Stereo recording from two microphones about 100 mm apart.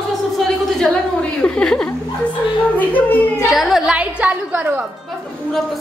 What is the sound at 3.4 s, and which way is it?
A woman's voice, centre (ahead or behind).